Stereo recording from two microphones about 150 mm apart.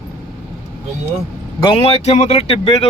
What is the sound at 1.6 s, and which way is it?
Speech, 40° left (ahead or behind).